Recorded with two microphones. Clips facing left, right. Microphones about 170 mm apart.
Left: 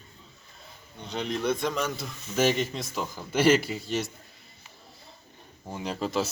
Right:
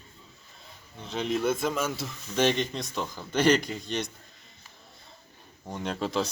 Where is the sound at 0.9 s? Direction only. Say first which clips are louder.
Right 2 dB; centre (ahead or behind).